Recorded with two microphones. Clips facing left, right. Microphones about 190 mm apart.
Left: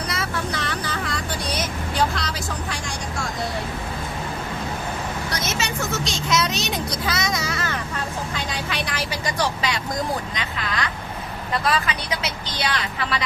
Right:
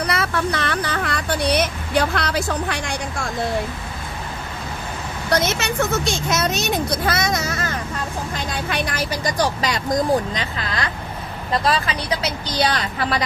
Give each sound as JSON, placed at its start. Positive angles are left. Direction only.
{"t": 0.1, "sound": "vehicle", "side_deg": -65}
{"t": 5.3, "sound": "speech", "side_deg": -60}
{"t": 8.7, "sound": "speech", "side_deg": -45}
{"t": 11.6, "sound": "speech", "side_deg": -35}